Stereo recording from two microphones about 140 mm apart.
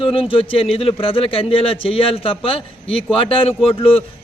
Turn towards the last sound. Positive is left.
turn(degrees=40)  # may be behind; listen again after turning